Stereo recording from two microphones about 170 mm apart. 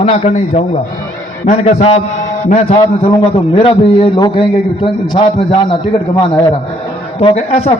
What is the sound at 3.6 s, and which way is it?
Speech, 30° left (ahead or behind).